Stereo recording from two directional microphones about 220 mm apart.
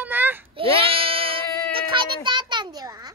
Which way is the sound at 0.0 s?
10° right (ahead or behind).